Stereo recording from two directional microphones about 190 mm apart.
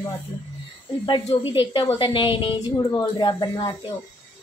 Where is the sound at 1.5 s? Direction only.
25° left (ahead or behind).